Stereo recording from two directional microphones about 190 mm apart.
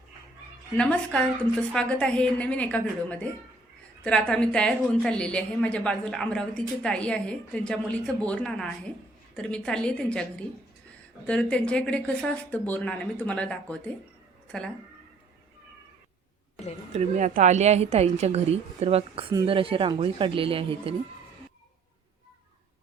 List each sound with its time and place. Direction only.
0.8 s a woman's voice: 5° left (ahead or behind)
16.9 s a woman's voice: 35° right (ahead or behind)